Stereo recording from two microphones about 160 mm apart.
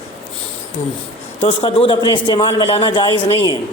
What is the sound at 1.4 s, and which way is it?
A man's voice, 35° left (ahead or behind).